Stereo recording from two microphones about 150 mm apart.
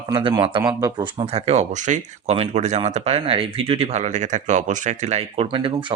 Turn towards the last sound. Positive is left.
turn(degrees=-35)  # may be behind; listen again after turning